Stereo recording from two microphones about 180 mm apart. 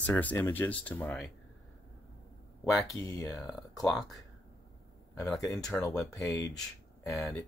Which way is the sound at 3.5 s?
Centre (ahead or behind).